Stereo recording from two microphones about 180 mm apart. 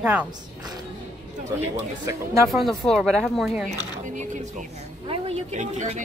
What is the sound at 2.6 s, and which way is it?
Speech, centre (ahead or behind).